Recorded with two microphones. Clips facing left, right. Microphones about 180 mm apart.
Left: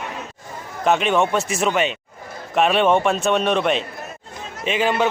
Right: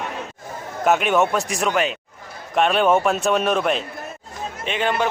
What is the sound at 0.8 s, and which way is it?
Speech, 5° right (ahead or behind).